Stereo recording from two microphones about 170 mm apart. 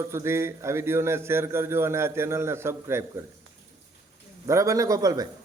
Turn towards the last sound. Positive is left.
turn(degrees=-20)  # may be behind; listen again after turning